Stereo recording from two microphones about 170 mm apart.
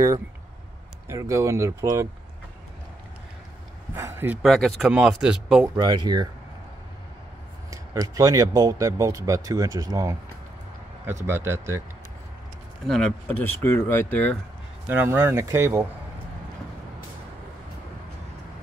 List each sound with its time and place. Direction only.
1.0 s speech: 15° right (ahead or behind)
3.9 s a sound: 15° right (ahead or behind)
4.4 s speech: centre (ahead or behind)
5.8 s speech: 25° right (ahead or behind)
7.7 s speech: 20° right (ahead or behind)
11.2 s speech: 15° right (ahead or behind)
12.8 s speech: centre (ahead or behind)
13.4 s speech: 15° left (ahead or behind)
14.9 s speech: 15° right (ahead or behind)